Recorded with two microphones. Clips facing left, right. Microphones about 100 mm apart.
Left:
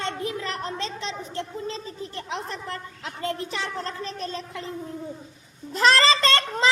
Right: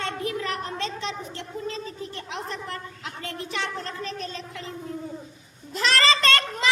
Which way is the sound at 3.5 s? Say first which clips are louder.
Even; 35° left (ahead or behind).